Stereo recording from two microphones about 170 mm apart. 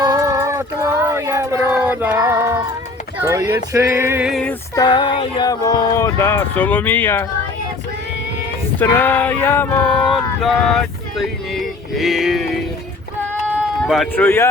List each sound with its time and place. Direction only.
0.0 s a sound: 20° right (ahead or behind)
1.7 s child singing: 10° right (ahead or behind)
2.1 s female singing: 15° right (ahead or behind)
3.2 s speech: 15° right (ahead or behind)
4.3 s a sound: 5° left (ahead or behind)
4.7 s speech: 25° left (ahead or behind)
8.8 s a sound: 10° left (ahead or behind)
13.8 s speech: centre (ahead or behind)
14.2 s speech: 15° left (ahead or behind)